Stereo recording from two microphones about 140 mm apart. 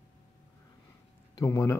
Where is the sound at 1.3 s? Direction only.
25° left (ahead or behind).